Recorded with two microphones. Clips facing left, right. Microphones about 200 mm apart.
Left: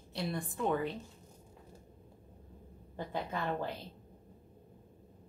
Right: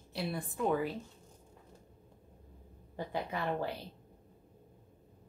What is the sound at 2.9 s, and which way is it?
Speech, 10° right (ahead or behind).